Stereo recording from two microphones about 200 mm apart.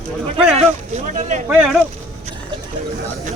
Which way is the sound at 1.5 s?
5° right (ahead or behind).